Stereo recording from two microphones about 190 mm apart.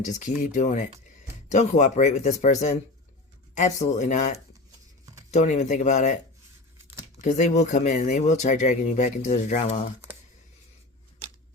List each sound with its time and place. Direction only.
0.4 s speech: 40° left (ahead or behind)
7.2 s speech: 40° left (ahead or behind)